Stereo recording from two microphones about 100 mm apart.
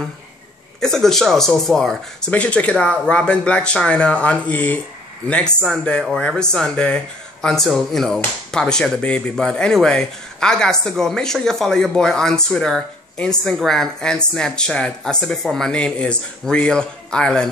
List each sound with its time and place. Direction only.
0.7 s speech: 5° left (ahead or behind)